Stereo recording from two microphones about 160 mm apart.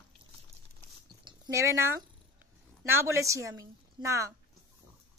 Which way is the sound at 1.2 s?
25° right (ahead or behind).